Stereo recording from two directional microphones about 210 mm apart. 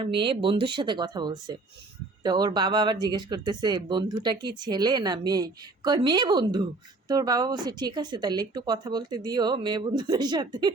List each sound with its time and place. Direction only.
0.0 s speech: 25° right (ahead or behind)